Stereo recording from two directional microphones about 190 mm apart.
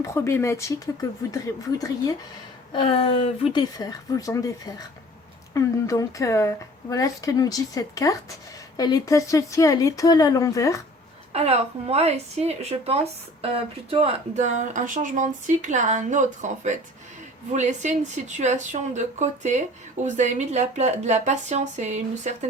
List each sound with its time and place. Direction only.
0.0 s a woman's voice: 15° left (ahead or behind)
2.7 s a woman's voice: 30° left (ahead or behind)
11.3 s a woman's voice: 35° right (ahead or behind)